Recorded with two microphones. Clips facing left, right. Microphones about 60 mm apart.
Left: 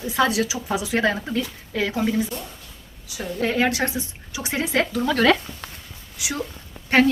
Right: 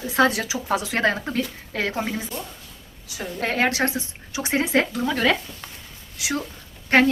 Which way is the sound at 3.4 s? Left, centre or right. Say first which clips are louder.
Even; right.